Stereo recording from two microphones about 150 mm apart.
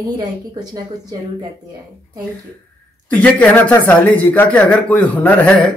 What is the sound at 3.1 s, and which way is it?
Speech, 10° left (ahead or behind).